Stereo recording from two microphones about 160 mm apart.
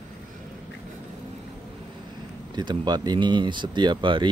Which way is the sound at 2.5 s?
30° right (ahead or behind).